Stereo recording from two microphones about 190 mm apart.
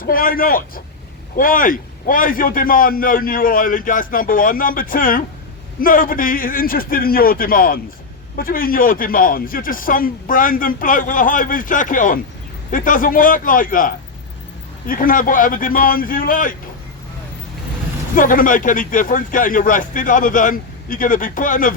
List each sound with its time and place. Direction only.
0.0 s a man's voice: 50° left (ahead or behind)
18.1 s a man's voice: 45° left (ahead or behind)